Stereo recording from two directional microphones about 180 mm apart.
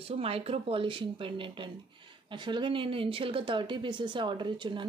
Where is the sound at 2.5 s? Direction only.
30° right (ahead or behind).